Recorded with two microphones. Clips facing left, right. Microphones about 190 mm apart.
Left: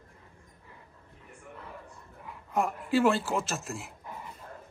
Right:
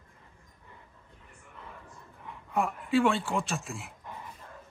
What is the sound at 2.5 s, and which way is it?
A man's voice, centre (ahead or behind).